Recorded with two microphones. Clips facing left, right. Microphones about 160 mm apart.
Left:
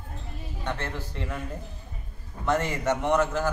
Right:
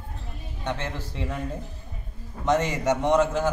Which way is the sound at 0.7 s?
15° right (ahead or behind).